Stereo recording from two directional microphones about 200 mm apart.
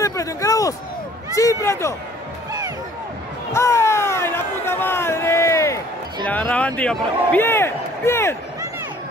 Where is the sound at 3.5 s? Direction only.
15° left (ahead or behind).